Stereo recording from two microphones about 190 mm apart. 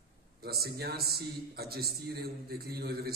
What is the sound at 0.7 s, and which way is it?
A man's voice, 55° right (ahead or behind).